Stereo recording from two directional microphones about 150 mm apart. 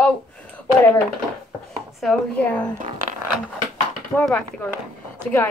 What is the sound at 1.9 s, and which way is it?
Speech, centre (ahead or behind).